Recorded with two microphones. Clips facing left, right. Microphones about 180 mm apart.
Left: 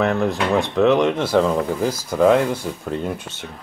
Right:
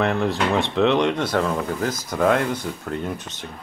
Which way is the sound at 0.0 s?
Centre (ahead or behind).